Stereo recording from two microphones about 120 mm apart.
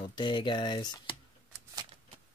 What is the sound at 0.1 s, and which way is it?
Speech, 40° left (ahead or behind).